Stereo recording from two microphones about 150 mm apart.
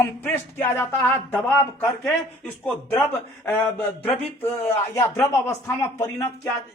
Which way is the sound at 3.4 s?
15° left (ahead or behind).